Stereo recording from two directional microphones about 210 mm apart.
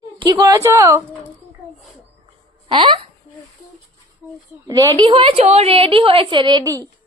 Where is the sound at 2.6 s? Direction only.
25° right (ahead or behind).